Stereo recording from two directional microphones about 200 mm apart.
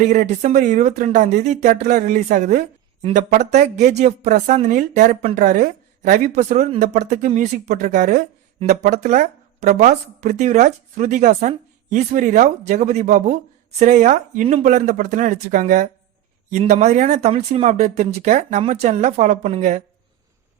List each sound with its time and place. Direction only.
0.0 s speech: 35° right (ahead or behind)